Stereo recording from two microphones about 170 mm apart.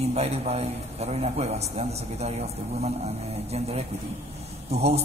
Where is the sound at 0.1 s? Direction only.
40° right (ahead or behind).